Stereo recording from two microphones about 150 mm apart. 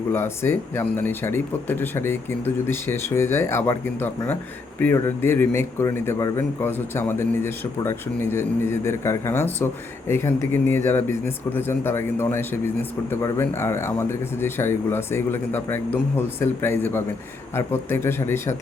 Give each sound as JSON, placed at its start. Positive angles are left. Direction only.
{"t": 0.1, "sound": "speech", "side_deg": 15}